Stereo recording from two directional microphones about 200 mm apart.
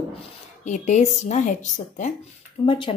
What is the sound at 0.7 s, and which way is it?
Speech, 35° left (ahead or behind).